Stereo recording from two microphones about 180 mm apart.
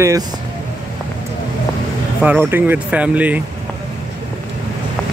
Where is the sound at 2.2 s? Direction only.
10° right (ahead or behind).